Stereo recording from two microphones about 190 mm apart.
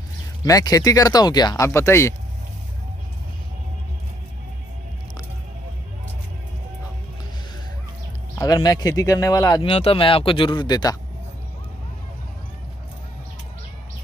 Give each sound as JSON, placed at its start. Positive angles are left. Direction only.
{"t": 0.5, "sound": "speech", "side_deg": 20}
{"t": 8.4, "sound": "speech", "side_deg": 20}